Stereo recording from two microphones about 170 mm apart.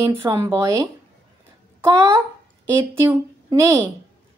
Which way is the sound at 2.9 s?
15° right (ahead or behind).